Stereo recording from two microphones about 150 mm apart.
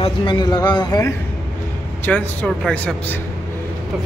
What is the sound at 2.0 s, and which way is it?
Speech, 5° left (ahead or behind).